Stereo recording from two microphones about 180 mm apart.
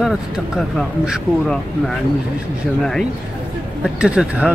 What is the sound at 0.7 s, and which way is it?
Speech, centre (ahead or behind).